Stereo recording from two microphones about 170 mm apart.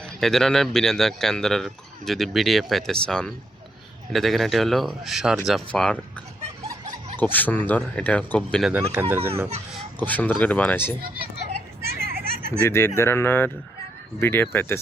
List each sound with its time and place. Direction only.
0.0 s speech: centre (ahead or behind)
7.2 s speech: 10° left (ahead or behind)
8.9 s speech: 10° right (ahead or behind)
10.0 s speech: 10° left (ahead or behind)
11.9 s hubbub: 65° right (ahead or behind)
12.6 s speech: 15° left (ahead or behind)